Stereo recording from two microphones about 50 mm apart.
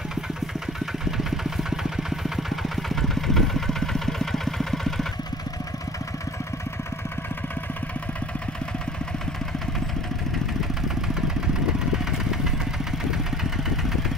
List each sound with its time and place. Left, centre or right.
1.1 s engine: centre
13.1 s vehicle: centre